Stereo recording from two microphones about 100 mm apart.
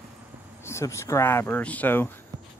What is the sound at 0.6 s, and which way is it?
Speech, 25° left (ahead or behind).